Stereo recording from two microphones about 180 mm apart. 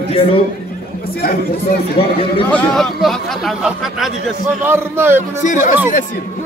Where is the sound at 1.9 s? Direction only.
30° left (ahead or behind).